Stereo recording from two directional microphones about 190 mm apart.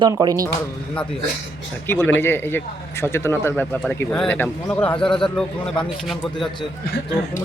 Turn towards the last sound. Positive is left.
turn(degrees=0)  # may be behind; listen again after turning